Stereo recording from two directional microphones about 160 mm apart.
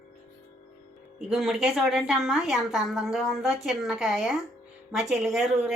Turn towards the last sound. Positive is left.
turn(degrees=0)  # may be behind; listen again after turning